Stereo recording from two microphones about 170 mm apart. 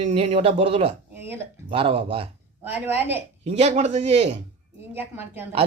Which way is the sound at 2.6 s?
10° right (ahead or behind).